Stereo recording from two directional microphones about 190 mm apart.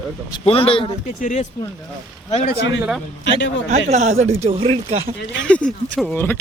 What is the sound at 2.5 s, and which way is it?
Speech, 70° left (ahead or behind).